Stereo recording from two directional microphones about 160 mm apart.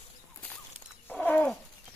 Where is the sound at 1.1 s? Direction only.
10° left (ahead or behind).